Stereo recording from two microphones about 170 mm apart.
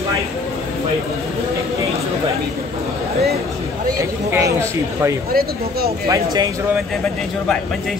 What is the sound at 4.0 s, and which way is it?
Speech, 20° right (ahead or behind).